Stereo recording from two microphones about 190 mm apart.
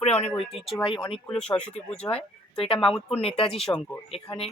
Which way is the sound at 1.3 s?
5° left (ahead or behind).